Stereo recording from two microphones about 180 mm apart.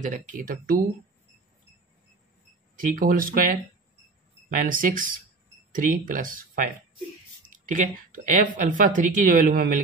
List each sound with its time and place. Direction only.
0.0 s speech: 45° right (ahead or behind)
2.7 s speech: 50° right (ahead or behind)